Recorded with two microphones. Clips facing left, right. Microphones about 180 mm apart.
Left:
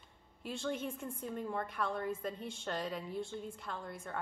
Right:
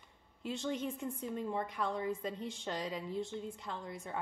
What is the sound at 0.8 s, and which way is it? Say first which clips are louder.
A woman's voice: right 2 dB; 15° right (ahead or behind).